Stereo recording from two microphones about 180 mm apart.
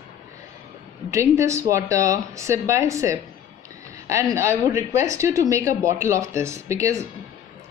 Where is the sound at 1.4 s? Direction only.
15° right (ahead or behind).